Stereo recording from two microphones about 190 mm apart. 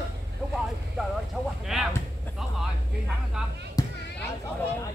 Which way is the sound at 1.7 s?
Centre (ahead or behind).